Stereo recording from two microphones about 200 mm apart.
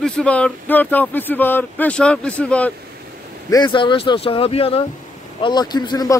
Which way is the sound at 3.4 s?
20° left (ahead or behind).